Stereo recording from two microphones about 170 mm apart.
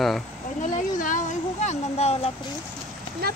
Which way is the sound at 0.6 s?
50° left (ahead or behind).